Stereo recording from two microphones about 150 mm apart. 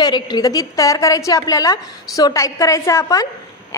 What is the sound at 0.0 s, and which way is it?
A woman's voice, 30° left (ahead or behind).